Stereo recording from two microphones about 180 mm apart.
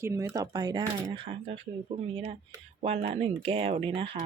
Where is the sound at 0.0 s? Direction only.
15° right (ahead or behind); by 1.6 s 30° right (ahead or behind).